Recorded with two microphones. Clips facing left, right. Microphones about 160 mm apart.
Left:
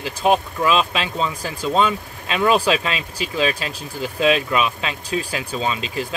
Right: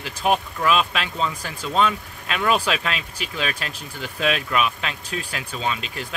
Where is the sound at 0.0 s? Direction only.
25° left (ahead or behind).